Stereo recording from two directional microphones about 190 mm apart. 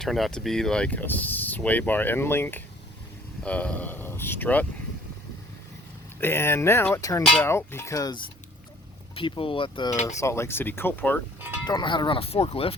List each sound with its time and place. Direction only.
0.0 s speech: centre (ahead or behind)
6.1 s speech: 10° left (ahead or behind)
7.2 s speech: 5° left (ahead or behind)
11.3 s music: 10° right (ahead or behind)
11.6 s speech: 20° left (ahead or behind)